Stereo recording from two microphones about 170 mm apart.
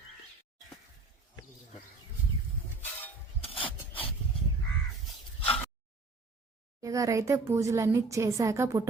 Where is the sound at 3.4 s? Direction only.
35° left (ahead or behind).